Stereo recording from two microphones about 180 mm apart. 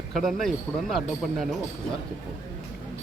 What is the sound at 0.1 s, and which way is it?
Speech, centre (ahead or behind).